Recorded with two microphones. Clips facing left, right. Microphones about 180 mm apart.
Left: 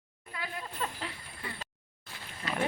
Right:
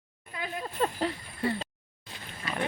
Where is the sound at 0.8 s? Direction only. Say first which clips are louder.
Right 11 dB; 40° right (ahead or behind).